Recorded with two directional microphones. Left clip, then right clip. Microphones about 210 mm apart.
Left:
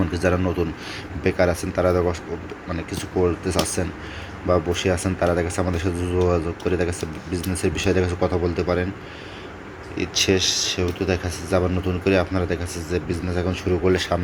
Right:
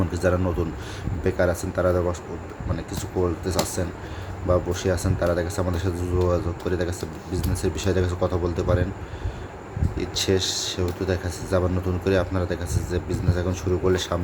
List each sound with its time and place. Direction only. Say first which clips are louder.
0.2 s speech: left 1 dB; centre (ahead or behind)
3.2 s speech: left 3 dB; centre (ahead or behind)
10.0 s speech: left 4 dB; centre (ahead or behind)